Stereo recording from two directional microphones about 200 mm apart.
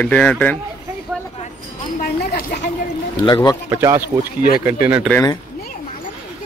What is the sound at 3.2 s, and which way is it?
Speech, 20° left (ahead or behind).